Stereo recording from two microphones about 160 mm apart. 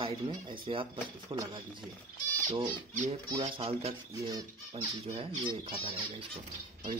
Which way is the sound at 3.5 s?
40° right (ahead or behind).